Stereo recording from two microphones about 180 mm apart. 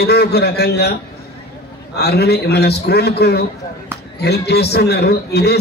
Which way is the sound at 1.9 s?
65° left (ahead or behind).